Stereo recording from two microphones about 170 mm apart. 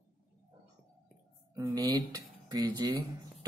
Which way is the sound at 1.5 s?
20° right (ahead or behind).